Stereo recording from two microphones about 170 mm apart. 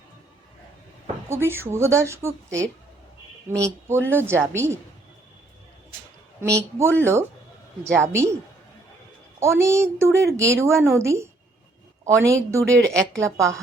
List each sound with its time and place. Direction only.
1.3 s a woman's voice: 15° right (ahead or behind)
6.4 s a woman's voice: 15° right (ahead or behind)
9.4 s a woman's voice: 15° right (ahead or behind)